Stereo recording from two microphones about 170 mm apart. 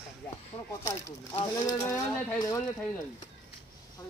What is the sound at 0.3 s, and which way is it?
Speech, 20° left (ahead or behind).